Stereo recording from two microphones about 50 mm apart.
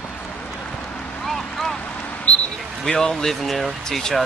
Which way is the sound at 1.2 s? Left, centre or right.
Centre.